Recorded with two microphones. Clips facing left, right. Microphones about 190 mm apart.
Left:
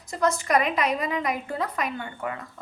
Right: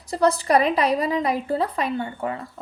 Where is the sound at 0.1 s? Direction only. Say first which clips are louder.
Right 4 dB; 35° right (ahead or behind).